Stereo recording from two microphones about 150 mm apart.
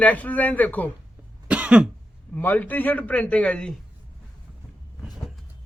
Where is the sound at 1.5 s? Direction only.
10° right (ahead or behind).